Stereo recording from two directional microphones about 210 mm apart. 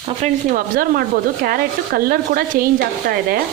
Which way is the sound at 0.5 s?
45° right (ahead or behind).